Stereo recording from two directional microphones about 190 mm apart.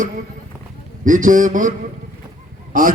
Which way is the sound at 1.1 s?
45° right (ahead or behind).